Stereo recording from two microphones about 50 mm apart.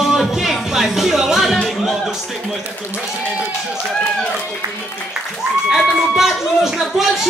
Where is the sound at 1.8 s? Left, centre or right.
Centre.